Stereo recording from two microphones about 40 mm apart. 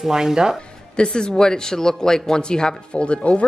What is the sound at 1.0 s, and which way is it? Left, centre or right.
Speech, centre.